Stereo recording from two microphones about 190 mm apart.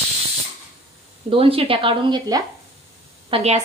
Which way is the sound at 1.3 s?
30° right (ahead or behind).